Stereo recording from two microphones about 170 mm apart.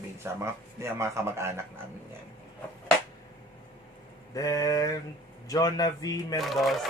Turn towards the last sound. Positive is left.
turn(degrees=0)  # may be behind; listen again after turning